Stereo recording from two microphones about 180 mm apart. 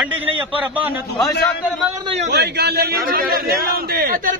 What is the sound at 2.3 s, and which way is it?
A man's voice, 65° right (ahead or behind).